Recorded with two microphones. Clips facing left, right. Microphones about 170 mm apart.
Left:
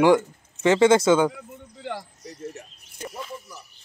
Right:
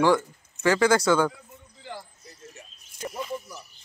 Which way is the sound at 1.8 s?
70° left (ahead or behind).